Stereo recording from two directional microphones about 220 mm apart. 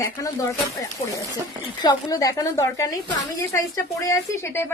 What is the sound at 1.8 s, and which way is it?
A woman's voice, 15° left (ahead or behind).